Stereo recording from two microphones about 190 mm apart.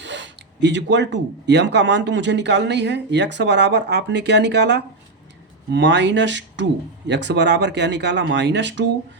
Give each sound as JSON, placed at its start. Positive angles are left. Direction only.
{"t": 0.0, "sound": "speech", "side_deg": -70}